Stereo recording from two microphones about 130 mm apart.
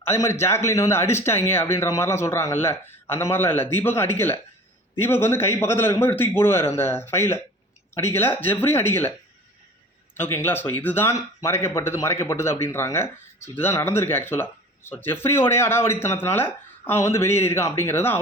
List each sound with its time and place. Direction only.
0.0 s a man's voice: 20° left (ahead or behind)
10.2 s a man's voice: 15° left (ahead or behind)